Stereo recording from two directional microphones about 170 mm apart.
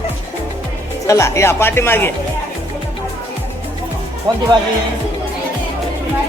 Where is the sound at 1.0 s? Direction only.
20° left (ahead or behind).